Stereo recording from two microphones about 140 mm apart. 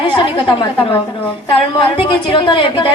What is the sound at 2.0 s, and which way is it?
Speech, 35° left (ahead or behind).